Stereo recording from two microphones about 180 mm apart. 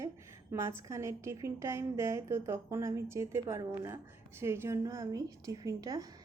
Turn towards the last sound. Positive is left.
turn(degrees=-20)  # may be behind; listen again after turning